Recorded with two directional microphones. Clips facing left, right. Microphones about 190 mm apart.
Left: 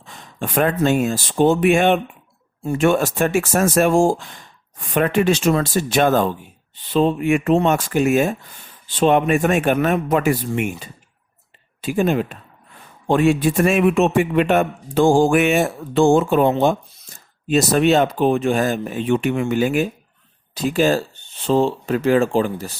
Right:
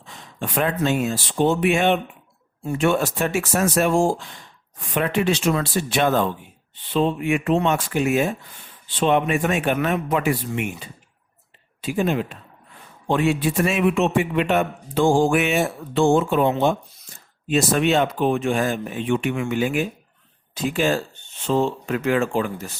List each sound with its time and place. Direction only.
0.0 s a man's voice: 50° left (ahead or behind)